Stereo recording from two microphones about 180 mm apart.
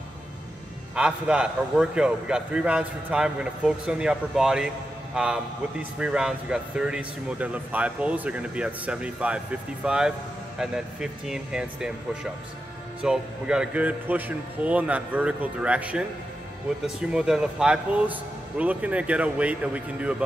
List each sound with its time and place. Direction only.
0.9 s a man's voice: 5° right (ahead or behind)